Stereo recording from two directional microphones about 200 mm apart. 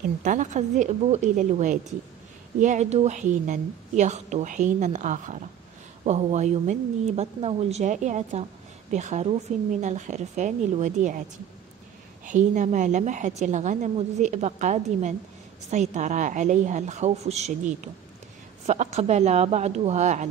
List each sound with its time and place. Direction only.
0.2 s a woman's voice: 40° right (ahead or behind)
12.3 s a woman's voice: 40° right (ahead or behind)